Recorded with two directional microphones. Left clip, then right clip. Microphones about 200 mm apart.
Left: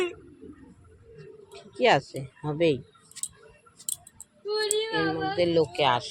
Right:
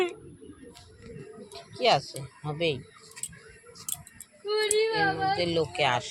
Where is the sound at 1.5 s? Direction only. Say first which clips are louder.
Left 2 dB; 35° left (ahead or behind).